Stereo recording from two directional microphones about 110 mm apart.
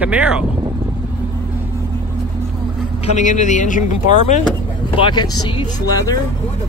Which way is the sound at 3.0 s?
90° left.